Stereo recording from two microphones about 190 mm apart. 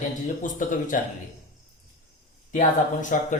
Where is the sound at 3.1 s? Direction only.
45° left (ahead or behind).